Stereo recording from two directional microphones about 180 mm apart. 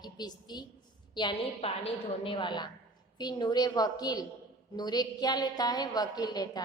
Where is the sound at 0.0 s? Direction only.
25° left (ahead or behind).